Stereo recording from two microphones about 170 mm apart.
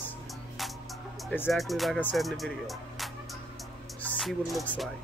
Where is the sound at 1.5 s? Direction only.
Centre (ahead or behind).